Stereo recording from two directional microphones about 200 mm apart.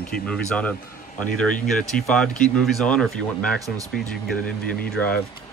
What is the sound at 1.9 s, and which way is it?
Speech, 5° left (ahead or behind).